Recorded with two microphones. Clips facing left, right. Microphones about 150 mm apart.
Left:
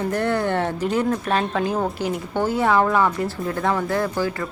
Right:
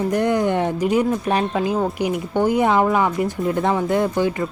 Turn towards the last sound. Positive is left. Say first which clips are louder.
# right 4 dB
turn(degrees=-20)  # may be behind; listen again after turning